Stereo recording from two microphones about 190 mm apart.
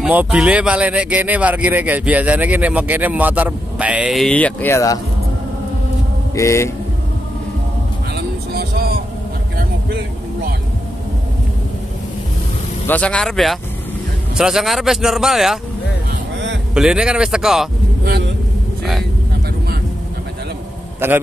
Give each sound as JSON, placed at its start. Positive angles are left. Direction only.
{"t": 0.0, "sound": "speech", "side_deg": -5}
{"t": 6.3, "sound": "speech", "side_deg": 15}
{"t": 8.5, "sound": "music", "side_deg": -55}
{"t": 9.6, "sound": "vehicle", "side_deg": -55}
{"t": 12.8, "sound": "speech", "side_deg": 5}
{"t": 16.7, "sound": "speech", "side_deg": -5}
{"t": 18.0, "sound": "vehicle", "side_deg": -60}
{"t": 21.0, "sound": "speech", "side_deg": -10}